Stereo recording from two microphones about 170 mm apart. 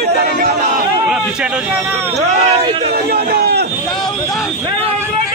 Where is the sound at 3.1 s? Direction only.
70° right (ahead or behind).